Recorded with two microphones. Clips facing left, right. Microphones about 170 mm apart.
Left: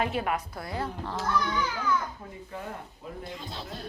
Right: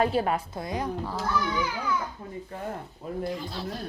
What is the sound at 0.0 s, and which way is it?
A child's voice, 35° right (ahead or behind).